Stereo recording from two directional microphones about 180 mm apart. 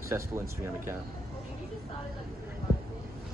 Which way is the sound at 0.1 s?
15° right (ahead or behind).